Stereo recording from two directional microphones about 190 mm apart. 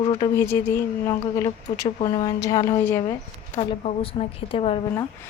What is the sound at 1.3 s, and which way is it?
Speech, 15° left (ahead or behind).